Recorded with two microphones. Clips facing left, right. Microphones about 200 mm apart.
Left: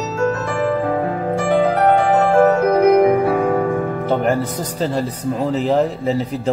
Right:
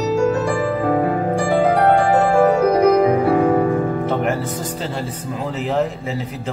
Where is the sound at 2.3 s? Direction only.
10° right (ahead or behind).